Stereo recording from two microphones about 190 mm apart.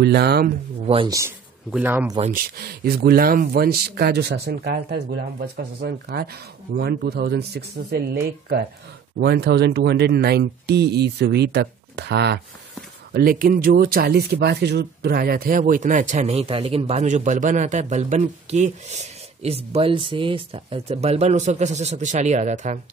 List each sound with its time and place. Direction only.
0.0 s speech: 60° right (ahead or behind)
0.8 s speech: 25° right (ahead or behind)
1.1 s a man's voice: 10° right (ahead or behind)
2.3 s speech: 50° right (ahead or behind)
13.1 s speech: 50° right (ahead or behind)